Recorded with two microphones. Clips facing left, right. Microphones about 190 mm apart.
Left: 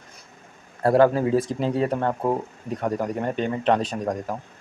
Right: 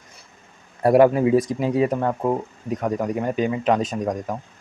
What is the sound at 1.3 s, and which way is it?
Speech, 30° left (ahead or behind).